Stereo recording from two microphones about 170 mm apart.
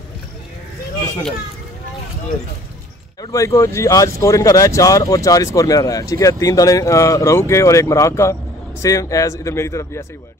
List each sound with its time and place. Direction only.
3.2 s speech: 20° left (ahead or behind)